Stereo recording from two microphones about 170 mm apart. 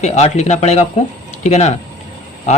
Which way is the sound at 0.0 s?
40° left (ahead or behind).